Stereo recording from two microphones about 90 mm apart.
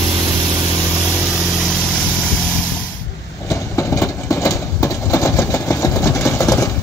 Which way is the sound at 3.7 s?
35° left (ahead or behind).